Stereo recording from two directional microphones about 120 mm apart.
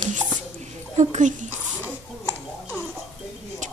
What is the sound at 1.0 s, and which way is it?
Speech, 90° right.